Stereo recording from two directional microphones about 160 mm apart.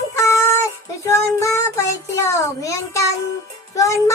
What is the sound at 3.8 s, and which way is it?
Music, 20° left (ahead or behind).